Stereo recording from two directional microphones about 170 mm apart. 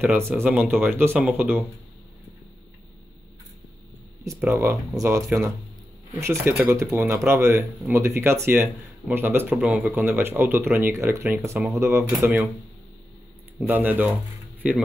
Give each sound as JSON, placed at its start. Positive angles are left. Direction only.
{"t": 0.4, "sound": "speech", "side_deg": -10}
{"t": 4.2, "sound": "speech", "side_deg": -15}
{"t": 13.6, "sound": "speech", "side_deg": -10}